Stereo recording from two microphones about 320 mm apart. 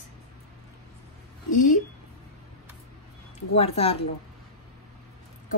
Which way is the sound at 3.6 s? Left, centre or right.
Centre.